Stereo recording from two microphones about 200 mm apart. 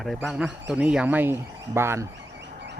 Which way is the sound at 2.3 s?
60° right (ahead or behind).